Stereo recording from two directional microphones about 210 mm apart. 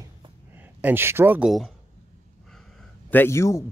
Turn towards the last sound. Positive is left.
turn(degrees=15)  # may be behind; listen again after turning